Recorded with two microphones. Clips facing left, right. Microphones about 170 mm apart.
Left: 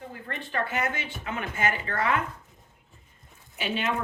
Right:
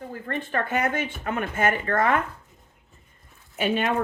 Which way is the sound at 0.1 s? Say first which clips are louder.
Right 7 dB; 45° right (ahead or behind).